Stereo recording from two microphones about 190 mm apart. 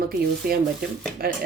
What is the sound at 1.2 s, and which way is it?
Speech, 50° right (ahead or behind).